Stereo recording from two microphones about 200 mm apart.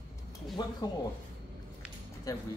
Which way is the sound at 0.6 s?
20° left (ahead or behind).